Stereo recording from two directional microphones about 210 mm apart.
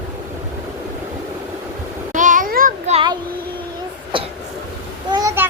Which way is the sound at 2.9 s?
20° right (ahead or behind).